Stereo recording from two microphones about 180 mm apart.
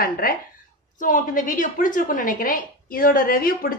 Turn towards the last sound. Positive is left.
turn(degrees=50)  # may be behind; listen again after turning